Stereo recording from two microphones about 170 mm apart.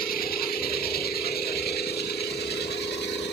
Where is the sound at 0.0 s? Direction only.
60° left (ahead or behind).